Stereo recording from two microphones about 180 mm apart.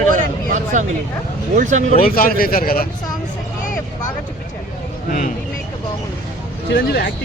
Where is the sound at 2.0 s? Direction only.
55° left (ahead or behind).